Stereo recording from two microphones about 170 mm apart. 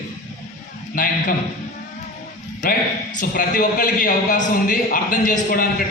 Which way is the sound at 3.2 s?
50° left (ahead or behind).